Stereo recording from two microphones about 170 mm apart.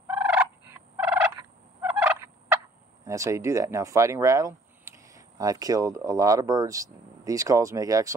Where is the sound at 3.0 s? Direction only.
20° right (ahead or behind).